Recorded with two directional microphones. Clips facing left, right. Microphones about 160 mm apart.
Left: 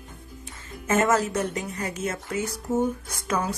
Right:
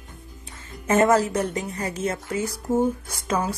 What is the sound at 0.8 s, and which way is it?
A woman's voice, 35° right (ahead or behind).